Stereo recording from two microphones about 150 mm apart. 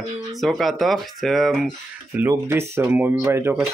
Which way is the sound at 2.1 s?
15° right (ahead or behind).